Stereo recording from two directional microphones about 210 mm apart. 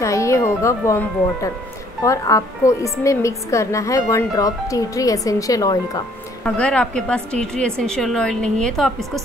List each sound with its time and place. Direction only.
0.0 s a woman's voice: 15° left (ahead or behind)
6.4 s a woman's voice: 5° left (ahead or behind)